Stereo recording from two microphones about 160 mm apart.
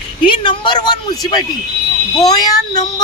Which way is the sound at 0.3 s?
30° left (ahead or behind).